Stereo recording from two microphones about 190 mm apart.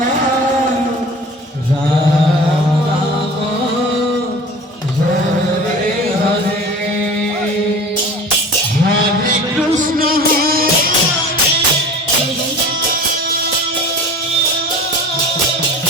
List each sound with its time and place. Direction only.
10.0 s music: 50° right (ahead or behind)